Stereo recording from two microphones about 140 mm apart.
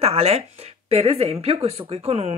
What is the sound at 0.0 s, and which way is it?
Speech, 45° right (ahead or behind).